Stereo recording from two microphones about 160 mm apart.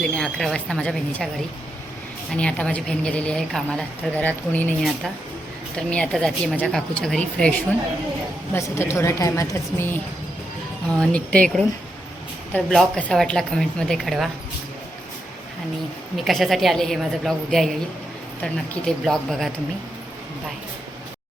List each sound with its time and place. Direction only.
0.0 s speech: 5° left (ahead or behind)
2.3 s a woman's voice: 5° left (ahead or behind)
8.5 s a woman's voice: 15° left (ahead or behind)
12.7 s speech: 5° left (ahead or behind)
16.1 s speech: centre (ahead or behind)